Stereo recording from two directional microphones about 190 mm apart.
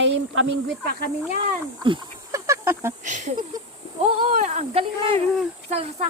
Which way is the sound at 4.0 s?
30° right (ahead or behind).